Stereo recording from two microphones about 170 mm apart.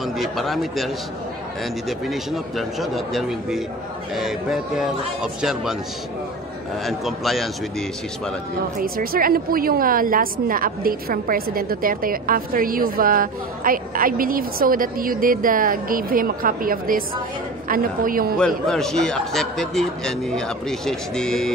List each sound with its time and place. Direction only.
0.0 s speech: centre (ahead or behind)
6.8 s speech: centre (ahead or behind)
8.7 s a woman's voice: 60° right (ahead or behind)
18.7 s speech: centre (ahead or behind)